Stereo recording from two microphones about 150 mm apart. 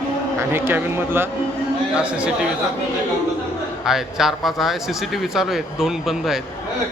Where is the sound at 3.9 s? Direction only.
Centre (ahead or behind).